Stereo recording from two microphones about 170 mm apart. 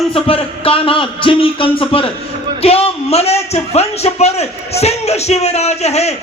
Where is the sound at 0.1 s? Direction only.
35° left (ahead or behind).